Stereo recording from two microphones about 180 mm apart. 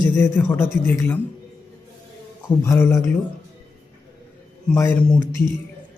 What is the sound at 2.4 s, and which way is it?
Speech, 15° left (ahead or behind).